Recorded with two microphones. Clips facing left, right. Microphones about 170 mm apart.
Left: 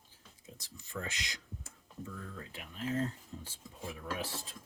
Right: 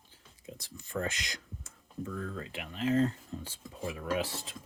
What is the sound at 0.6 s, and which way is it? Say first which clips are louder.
Speech: right 7 dB; 50° right (ahead or behind).